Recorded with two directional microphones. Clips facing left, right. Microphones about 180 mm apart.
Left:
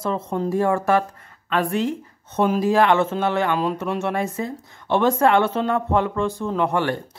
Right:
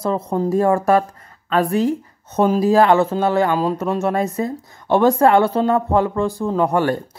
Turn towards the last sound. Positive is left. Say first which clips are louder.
# right 4 dB
turn(degrees=-40)  # may be behind; listen again after turning